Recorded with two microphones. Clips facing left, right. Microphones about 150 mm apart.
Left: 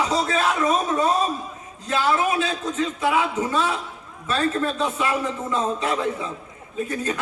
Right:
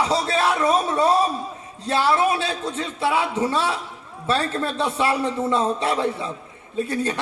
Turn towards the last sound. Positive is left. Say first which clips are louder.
# right 2 dB
turn(degrees=-30)  # may be behind; listen again after turning